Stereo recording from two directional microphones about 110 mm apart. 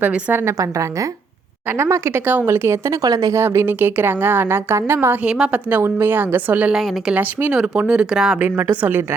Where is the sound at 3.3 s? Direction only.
20° right (ahead or behind).